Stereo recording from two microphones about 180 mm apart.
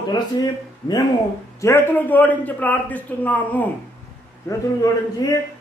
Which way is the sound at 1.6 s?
15° left (ahead or behind).